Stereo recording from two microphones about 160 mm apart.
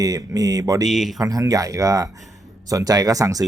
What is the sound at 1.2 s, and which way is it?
Speech, 20° right (ahead or behind).